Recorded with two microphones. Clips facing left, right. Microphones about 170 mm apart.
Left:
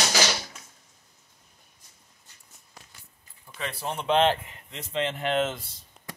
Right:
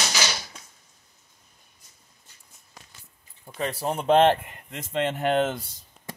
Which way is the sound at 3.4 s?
40° right (ahead or behind).